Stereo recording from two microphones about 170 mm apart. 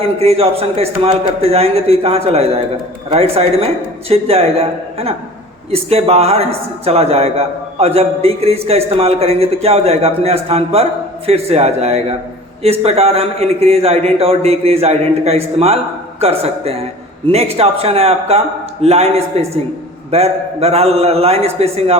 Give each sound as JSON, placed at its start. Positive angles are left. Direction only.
{"t": 0.0, "sound": "a man's voice", "side_deg": -35}